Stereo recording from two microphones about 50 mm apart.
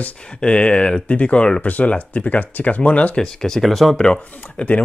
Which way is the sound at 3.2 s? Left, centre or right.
Centre.